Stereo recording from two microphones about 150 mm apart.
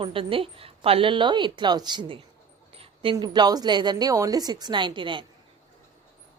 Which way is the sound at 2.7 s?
40° right (ahead or behind).